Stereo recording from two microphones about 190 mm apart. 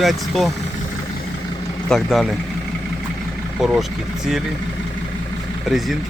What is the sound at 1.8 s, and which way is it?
Speech, centre (ahead or behind).